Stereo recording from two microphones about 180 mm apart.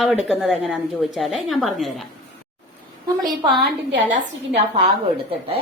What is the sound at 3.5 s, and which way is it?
Speech, 60° right (ahead or behind).